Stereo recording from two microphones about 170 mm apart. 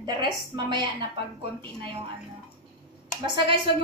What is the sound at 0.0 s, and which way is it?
A woman's voice, 25° right (ahead or behind).